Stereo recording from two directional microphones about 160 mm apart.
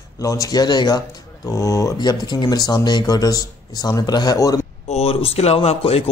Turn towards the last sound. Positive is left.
turn(degrees=40)  # may be behind; listen again after turning